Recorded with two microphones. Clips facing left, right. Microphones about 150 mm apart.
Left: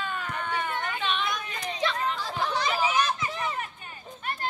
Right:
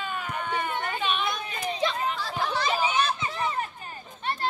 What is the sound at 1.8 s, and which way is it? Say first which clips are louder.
Chatter: even; 10° right (ahead or behind).